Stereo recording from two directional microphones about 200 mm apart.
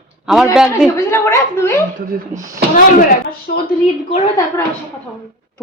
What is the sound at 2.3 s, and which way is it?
Speech, 15° right (ahead or behind).